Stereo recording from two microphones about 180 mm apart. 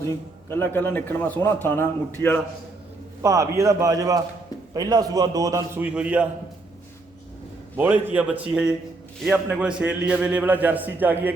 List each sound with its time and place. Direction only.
0.4 s a man's voice: 15° left (ahead or behind)
3.2 s a man's voice: 15° right (ahead or behind)
5.8 s a man's voice: 5° right (ahead or behind)
7.8 s a man's voice: 10° right (ahead or behind)